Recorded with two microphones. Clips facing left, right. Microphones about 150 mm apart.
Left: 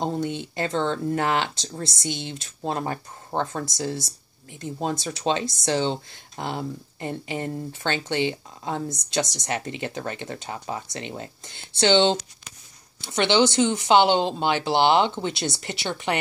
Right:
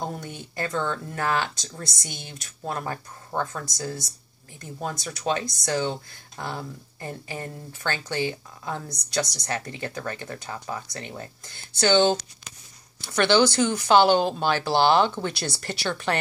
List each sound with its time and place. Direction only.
0.0 s speech: 25° left (ahead or behind)